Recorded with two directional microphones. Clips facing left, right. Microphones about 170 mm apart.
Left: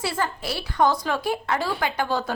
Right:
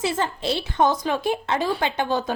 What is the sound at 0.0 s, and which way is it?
A woman's voice, 20° right (ahead or behind).